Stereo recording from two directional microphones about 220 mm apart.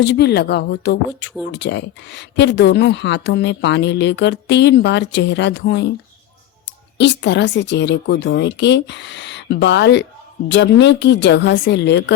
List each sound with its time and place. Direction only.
0.0 s a woman's voice: 50° left (ahead or behind)
7.0 s a woman's voice: 55° left (ahead or behind)